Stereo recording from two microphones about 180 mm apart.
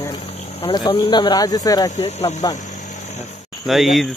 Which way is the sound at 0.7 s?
25° left (ahead or behind).